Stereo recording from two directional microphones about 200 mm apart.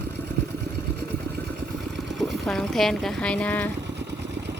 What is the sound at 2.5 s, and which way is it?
Speech, centre (ahead or behind).